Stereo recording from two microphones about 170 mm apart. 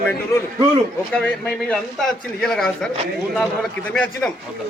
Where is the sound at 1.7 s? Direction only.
5° left (ahead or behind).